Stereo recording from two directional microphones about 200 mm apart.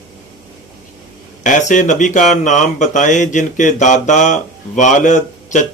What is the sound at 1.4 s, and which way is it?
Mantra, 40° left (ahead or behind).